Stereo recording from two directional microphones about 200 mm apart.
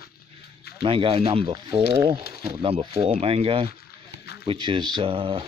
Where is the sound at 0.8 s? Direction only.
25° right (ahead or behind).